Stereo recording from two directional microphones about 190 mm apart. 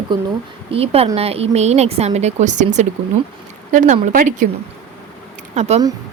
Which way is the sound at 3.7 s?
40° right (ahead or behind).